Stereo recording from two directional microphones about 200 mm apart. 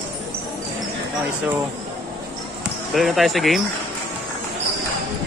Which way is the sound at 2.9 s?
Centre (ahead or behind).